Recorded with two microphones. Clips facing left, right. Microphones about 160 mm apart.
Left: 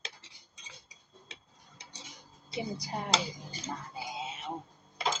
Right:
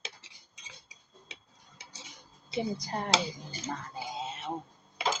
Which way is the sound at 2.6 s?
10° left (ahead or behind).